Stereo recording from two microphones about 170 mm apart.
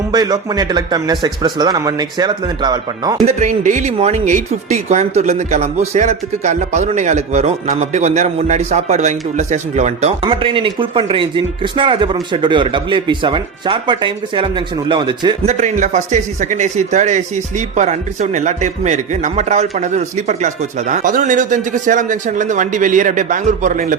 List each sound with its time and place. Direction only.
0.1 s speech: 25° right (ahead or behind)
3.2 s speech: 45° right (ahead or behind); by 15.4 s 25° right (ahead or behind)
15.4 s speech: 45° right (ahead or behind)